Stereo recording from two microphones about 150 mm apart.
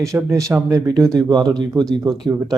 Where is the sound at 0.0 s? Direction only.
20° right (ahead or behind).